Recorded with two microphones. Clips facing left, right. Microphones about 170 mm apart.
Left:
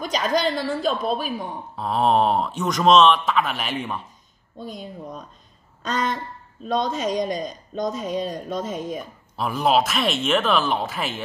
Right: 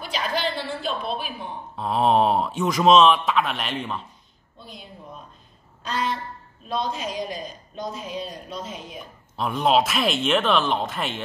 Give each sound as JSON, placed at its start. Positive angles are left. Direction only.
{"t": 0.0, "sound": "a woman's voice", "side_deg": 40}
{"t": 1.8, "sound": "speech", "side_deg": 0}
{"t": 4.6, "sound": "speech", "side_deg": 45}
{"t": 9.4, "sound": "speech", "side_deg": 0}